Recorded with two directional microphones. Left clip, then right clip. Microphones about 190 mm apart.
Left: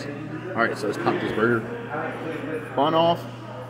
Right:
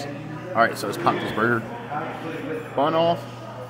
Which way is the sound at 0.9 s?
15° right (ahead or behind).